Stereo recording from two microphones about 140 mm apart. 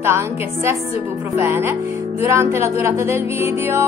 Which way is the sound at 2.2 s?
20° right (ahead or behind).